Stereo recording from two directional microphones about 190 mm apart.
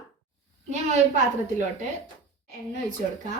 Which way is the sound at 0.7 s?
40° right (ahead or behind).